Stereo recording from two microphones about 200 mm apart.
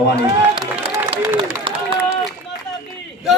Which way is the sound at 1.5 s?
25° right (ahead or behind).